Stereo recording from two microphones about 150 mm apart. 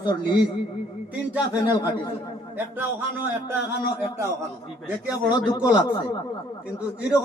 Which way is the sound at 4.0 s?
20° right (ahead or behind).